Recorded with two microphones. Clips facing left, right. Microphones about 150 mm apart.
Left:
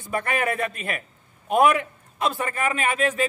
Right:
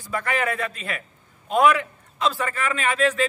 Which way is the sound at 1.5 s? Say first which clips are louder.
Even; 25° left (ahead or behind).